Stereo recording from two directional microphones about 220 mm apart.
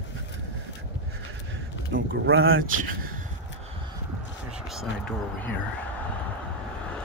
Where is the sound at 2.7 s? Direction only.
40° right (ahead or behind).